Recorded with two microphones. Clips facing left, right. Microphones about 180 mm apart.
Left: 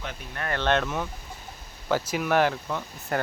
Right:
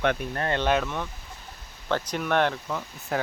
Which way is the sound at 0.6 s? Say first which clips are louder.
Left 1 dB; 5° right (ahead or behind).